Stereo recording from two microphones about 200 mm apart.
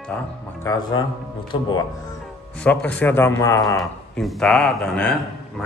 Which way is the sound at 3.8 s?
Centre (ahead or behind).